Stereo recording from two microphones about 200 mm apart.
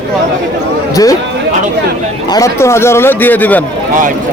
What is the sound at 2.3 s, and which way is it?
A man's voice, 15° left (ahead or behind).